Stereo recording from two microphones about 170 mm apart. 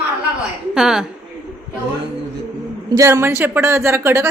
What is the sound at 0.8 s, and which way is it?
Speech, 5° right (ahead or behind).